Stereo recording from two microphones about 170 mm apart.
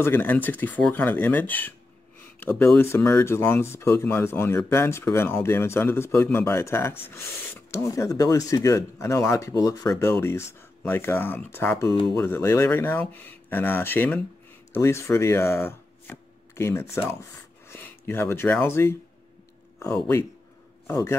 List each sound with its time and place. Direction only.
0.0 s a man's voice: 10° left (ahead or behind)